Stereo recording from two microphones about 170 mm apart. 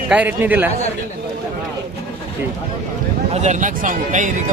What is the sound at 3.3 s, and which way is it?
Speech, 45° right (ahead or behind).